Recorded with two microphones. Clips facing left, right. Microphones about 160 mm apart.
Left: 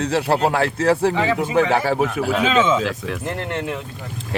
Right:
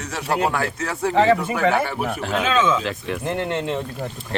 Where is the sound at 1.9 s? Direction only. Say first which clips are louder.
Left 6 dB; 90° left.